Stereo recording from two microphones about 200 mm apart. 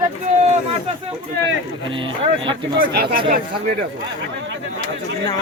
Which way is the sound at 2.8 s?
50° right (ahead or behind).